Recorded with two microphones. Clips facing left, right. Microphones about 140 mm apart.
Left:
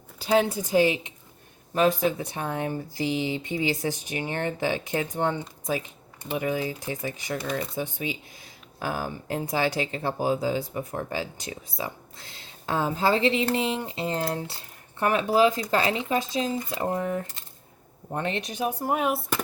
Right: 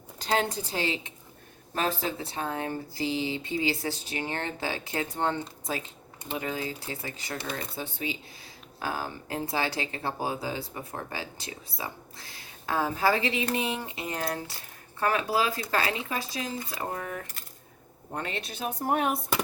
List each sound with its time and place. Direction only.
0.2 s speech: 10° left (ahead or behind)